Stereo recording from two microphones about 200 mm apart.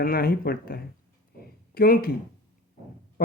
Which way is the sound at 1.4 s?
50° left (ahead or behind).